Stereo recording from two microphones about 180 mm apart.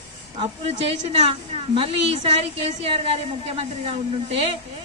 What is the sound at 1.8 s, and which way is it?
A woman's voice, 30° right (ahead or behind).